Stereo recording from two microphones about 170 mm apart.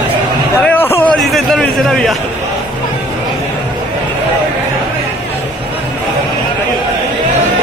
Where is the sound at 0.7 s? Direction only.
15° left (ahead or behind).